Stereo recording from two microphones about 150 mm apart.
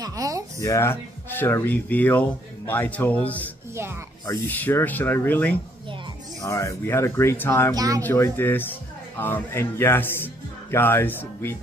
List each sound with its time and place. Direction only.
0.0 s a sound: 25° right (ahead or behind)
0.6 s speech: 20° left (ahead or behind)
7.7 s speech: 25° right (ahead or behind)
8.0 s speech: 15° left (ahead or behind)